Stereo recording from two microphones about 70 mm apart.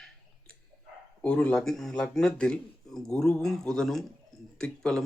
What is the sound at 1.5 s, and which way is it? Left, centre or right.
Speech, centre.